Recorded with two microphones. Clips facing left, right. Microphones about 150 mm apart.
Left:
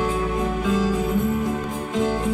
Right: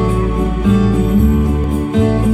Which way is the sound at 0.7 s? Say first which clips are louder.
Right 9 dB; 60° right (ahead or behind).